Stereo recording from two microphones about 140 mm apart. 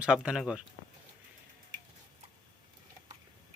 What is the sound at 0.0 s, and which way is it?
Speech, 5° right (ahead or behind).